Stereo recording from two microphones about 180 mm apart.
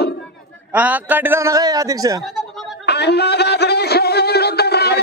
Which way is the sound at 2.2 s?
Centre (ahead or behind).